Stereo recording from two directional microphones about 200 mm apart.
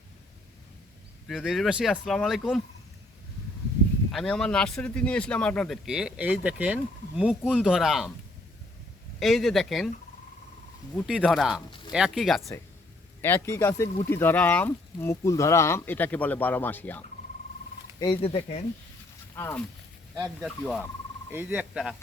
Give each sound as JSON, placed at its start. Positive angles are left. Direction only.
{"t": 1.3, "sound": "a man's voice", "side_deg": 0}
{"t": 4.1, "sound": "a man's voice", "side_deg": 0}
{"t": 9.1, "sound": "a man's voice", "side_deg": 0}
{"t": 10.9, "sound": "a man's voice", "side_deg": 5}
{"t": 13.2, "sound": "speech", "side_deg": 10}
{"t": 18.0, "sound": "speech", "side_deg": 25}
{"t": 19.4, "sound": "speech", "side_deg": 10}
{"t": 20.1, "sound": "speech", "side_deg": -10}